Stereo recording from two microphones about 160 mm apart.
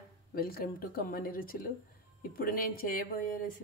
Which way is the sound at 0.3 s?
70° left (ahead or behind).